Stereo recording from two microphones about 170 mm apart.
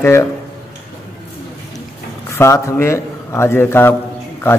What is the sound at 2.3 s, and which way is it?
A man's voice, 15° left (ahead or behind).